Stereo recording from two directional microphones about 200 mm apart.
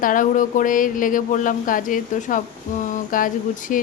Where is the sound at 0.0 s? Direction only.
40° left (ahead or behind).